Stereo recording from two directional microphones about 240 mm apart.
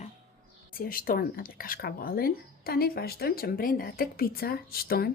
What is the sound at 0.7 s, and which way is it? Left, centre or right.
Speech, left.